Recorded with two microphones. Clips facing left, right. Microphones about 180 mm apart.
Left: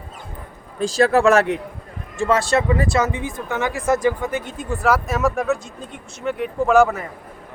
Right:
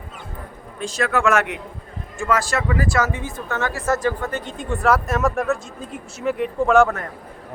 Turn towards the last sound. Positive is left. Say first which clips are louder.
# left 1 dB
turn(degrees=5)  # may be behind; listen again after turning